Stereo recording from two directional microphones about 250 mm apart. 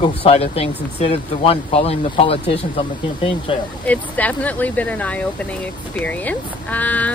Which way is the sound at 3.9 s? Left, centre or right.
Centre.